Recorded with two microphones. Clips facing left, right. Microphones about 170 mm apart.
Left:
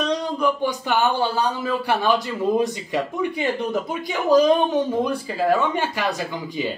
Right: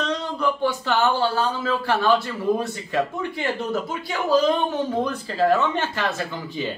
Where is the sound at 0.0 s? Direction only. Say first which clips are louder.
Left 3 dB; 15° left (ahead or behind).